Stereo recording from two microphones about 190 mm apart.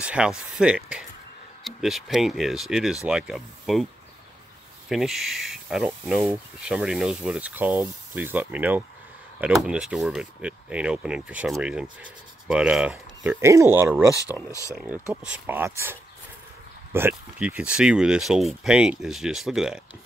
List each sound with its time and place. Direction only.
0.0 s speech: 5° right (ahead or behind)
4.8 s speech: centre (ahead or behind)
16.9 s speech: 10° right (ahead or behind)